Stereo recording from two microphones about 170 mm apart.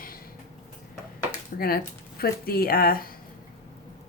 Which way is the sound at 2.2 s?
65° left (ahead or behind).